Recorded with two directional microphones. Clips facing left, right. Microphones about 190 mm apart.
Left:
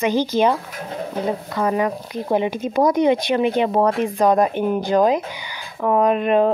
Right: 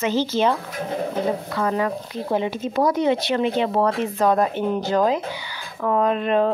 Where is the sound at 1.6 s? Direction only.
15° left (ahead or behind).